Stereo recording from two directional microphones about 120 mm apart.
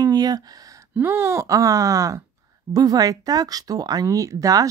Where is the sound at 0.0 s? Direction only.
35° right (ahead or behind).